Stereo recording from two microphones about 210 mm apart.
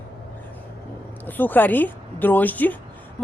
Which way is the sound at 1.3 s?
10° left (ahead or behind).